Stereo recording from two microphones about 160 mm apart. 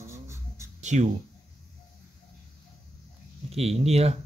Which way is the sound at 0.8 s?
45° right (ahead or behind).